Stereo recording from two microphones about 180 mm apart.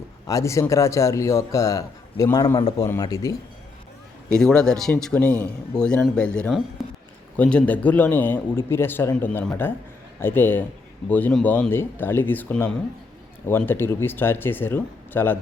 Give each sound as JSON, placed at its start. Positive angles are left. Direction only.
{"t": 0.3, "sound": "a man's voice", "side_deg": 15}
{"t": 4.3, "sound": "a man's voice", "side_deg": 5}
{"t": 6.8, "sound": "a sound", "side_deg": 0}
{"t": 7.3, "sound": "a man's voice", "side_deg": 5}